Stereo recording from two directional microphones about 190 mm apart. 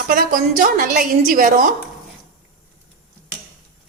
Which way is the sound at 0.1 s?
45° right (ahead or behind).